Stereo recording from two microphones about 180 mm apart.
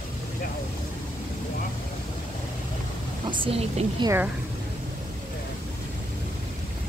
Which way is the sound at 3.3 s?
30° right (ahead or behind).